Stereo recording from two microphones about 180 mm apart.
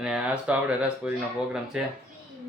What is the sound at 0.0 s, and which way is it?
Speech, 5° right (ahead or behind).